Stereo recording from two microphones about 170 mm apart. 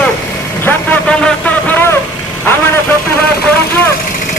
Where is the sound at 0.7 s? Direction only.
5° left (ahead or behind).